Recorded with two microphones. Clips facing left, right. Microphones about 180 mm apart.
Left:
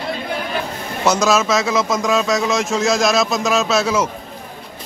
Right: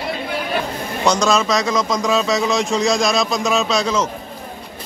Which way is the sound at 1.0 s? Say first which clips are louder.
Left 1 dB; 5° left (ahead or behind).